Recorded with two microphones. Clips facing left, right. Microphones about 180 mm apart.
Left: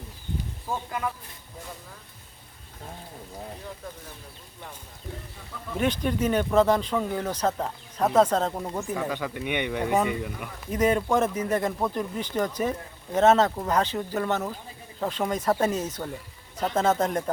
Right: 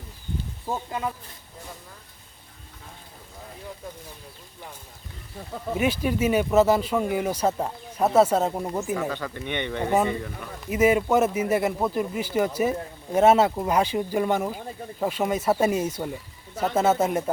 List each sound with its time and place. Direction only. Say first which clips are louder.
0.7 s speech: right 2 dB; 25° right (ahead or behind)
5.7 s speech: right 1 dB; 10° right (ahead or behind)
9.0 s speech: even; 10° left (ahead or behind)
10.7 s speech: right 3 dB; 5° right (ahead or behind)